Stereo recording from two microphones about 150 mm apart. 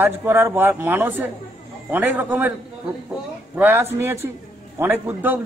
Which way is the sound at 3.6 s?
15° right (ahead or behind).